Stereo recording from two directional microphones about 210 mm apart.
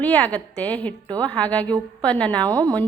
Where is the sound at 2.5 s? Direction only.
15° right (ahead or behind).